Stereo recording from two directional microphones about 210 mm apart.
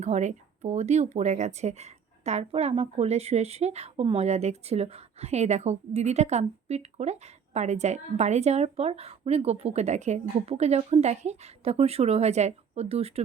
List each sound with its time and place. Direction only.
0.0 s speech: 35° right (ahead or behind)